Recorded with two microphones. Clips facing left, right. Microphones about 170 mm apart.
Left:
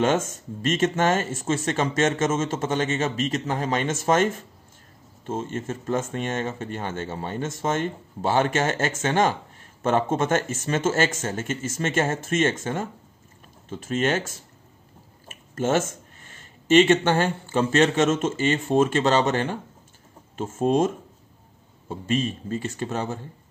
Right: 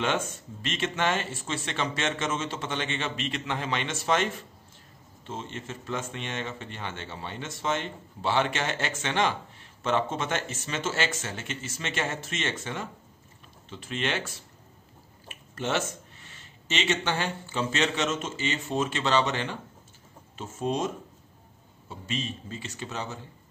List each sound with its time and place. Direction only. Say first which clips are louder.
0.0 s speech: left 6 dB; 45° left (ahead or behind)